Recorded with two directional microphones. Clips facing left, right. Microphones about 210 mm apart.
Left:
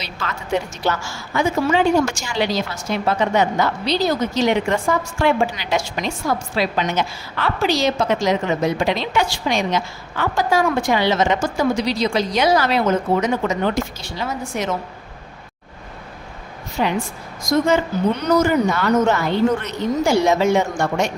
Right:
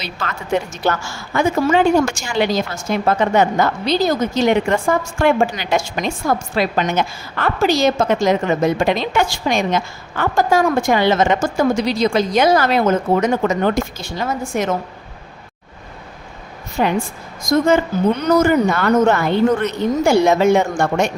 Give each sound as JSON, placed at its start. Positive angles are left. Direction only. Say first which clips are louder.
{"t": 0.0, "sound": "a woman's voice", "louder": "right 2 dB", "side_deg": -55}
{"t": 16.8, "sound": "a woman's voice", "louder": "right 3 dB", "side_deg": -50}
{"t": 18.4, "sound": "speech", "louder": "right 3 dB", "side_deg": -55}